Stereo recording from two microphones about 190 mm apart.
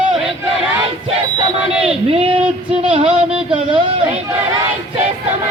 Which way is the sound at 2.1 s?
30° right (ahead or behind).